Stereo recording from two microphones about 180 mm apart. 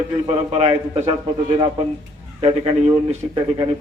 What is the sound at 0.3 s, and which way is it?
Speech, 35° right (ahead or behind).